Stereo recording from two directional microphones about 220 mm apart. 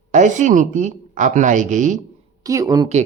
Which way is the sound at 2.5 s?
15° right (ahead or behind).